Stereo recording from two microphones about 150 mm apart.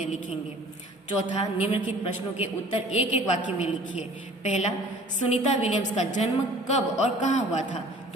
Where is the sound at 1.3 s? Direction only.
45° left (ahead or behind).